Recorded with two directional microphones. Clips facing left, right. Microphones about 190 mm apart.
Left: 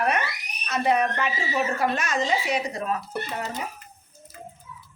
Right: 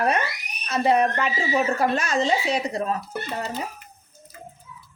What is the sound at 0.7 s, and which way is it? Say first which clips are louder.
Speech: right 3 dB; 30° right (ahead or behind).